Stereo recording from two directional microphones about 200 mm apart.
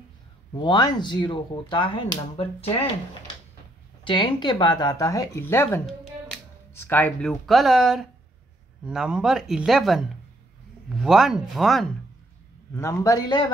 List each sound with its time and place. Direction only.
0.6 s speech: 20° left (ahead or behind)
4.0 s speech: 25° left (ahead or behind); by 11.9 s centre (ahead or behind)
12.7 s a man's voice: 15° left (ahead or behind)